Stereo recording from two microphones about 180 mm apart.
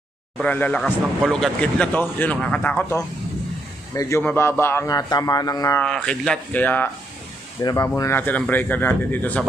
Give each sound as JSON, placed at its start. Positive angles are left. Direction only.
{"t": 0.4, "sound": "a man's voice", "side_deg": 10}
{"t": 5.8, "sound": "speech", "side_deg": 5}